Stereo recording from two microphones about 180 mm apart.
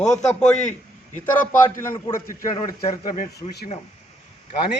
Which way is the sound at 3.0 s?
45° left (ahead or behind).